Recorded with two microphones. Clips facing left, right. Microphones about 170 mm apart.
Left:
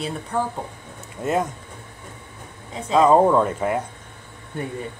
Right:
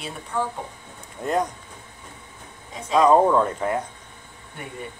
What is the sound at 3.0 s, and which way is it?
Speech, 5° left (ahead or behind).